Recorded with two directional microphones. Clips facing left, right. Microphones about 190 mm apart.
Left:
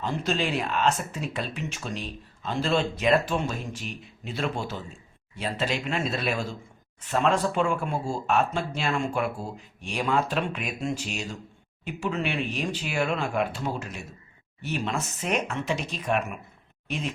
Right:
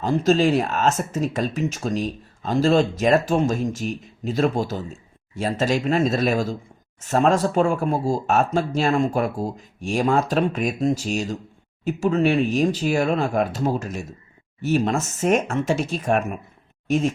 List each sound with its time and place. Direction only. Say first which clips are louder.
0.0 s speech: right 10 dB; 40° right (ahead or behind)